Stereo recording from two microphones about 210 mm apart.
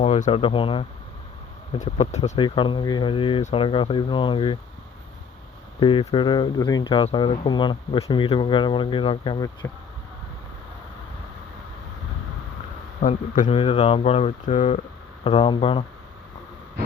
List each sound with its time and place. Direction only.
0.0 s speech: 30° left (ahead or behind)
5.8 s speech: 25° left (ahead or behind)
13.0 s speech: 35° left (ahead or behind)